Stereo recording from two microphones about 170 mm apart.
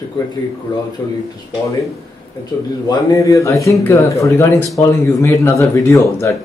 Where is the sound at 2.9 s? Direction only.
20° left (ahead or behind).